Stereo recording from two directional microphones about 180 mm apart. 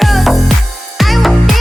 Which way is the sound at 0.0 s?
Centre (ahead or behind).